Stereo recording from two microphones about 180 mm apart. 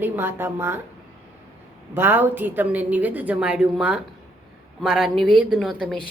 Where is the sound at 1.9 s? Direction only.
10° right (ahead or behind).